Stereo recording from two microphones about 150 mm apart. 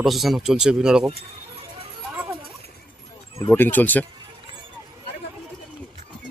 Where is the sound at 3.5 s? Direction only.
15° left (ahead or behind).